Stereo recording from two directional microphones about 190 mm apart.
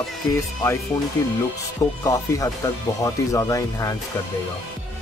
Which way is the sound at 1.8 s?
15° left (ahead or behind).